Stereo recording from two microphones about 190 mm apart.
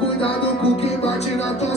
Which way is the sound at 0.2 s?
30° left (ahead or behind).